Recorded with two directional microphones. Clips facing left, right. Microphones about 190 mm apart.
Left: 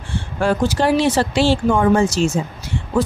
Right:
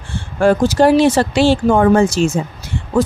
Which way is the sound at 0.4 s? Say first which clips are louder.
Right 6 dB; 45° right (ahead or behind).